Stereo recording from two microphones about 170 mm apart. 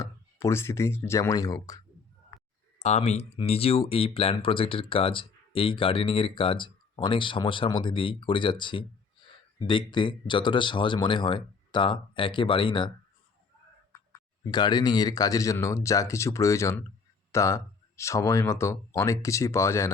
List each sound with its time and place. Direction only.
0.0 s speech: 15° left (ahead or behind)
2.7 s speech: 40° left (ahead or behind)
9.2 s a sound: 25° left (ahead or behind)
9.6 s speech: 30° left (ahead or behind)
14.5 s speech: 25° left (ahead or behind)